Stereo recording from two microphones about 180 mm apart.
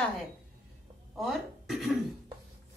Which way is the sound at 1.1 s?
Centre (ahead or behind).